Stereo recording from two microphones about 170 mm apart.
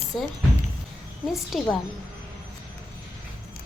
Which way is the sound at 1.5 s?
Centre (ahead or behind).